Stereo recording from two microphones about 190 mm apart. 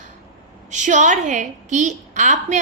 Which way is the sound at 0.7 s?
40° right (ahead or behind).